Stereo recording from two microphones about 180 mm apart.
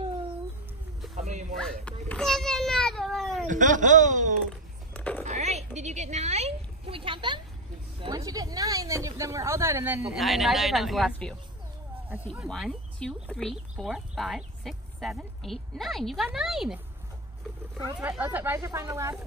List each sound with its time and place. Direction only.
1.1 s music: 40° right (ahead or behind)
1.6 s children playing: 5° left (ahead or behind)
3.4 s speech: 45° right (ahead or behind)
4.9 s a sound: 10° left (ahead or behind)
5.2 s a sound: 40° right (ahead or behind)
5.8 s a woman's voice: 40° right (ahead or behind); by 10.0 s 15° right (ahead or behind)
10.1 s speech: centre (ahead or behind)
12.4 s speech: centre (ahead or behind)
17.9 s speech: 5° right (ahead or behind)